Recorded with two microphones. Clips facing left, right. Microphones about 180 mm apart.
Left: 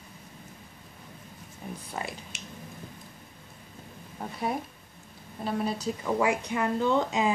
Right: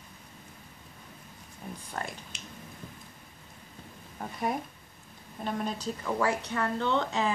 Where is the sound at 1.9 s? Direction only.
5° left (ahead or behind).